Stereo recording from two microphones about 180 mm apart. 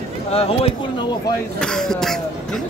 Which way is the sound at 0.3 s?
35° left (ahead or behind).